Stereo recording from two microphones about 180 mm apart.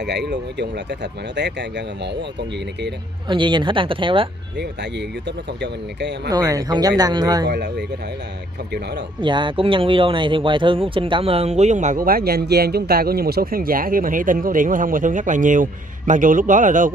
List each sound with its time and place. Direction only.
0.0 s speech: 70° right (ahead or behind)
3.3 s speech: 25° right (ahead or behind)
5.6 s speech: 75° right (ahead or behind)
6.3 s speech: 20° right (ahead or behind)
7.4 s speech: 70° right (ahead or behind)
9.2 s speech: 25° right (ahead or behind); by 16.9 s 45° right (ahead or behind)